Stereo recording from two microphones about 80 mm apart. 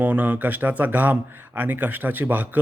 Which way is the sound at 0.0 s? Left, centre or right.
Right.